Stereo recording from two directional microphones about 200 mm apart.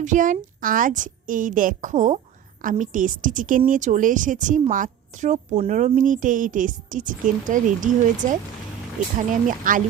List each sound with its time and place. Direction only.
0.0 s a woman's voice: 40° right (ahead or behind)
9.5 s a woman's voice: 40° right (ahead or behind)